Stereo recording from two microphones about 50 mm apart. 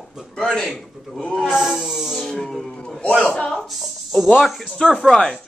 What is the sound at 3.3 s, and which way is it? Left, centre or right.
Speech, centre.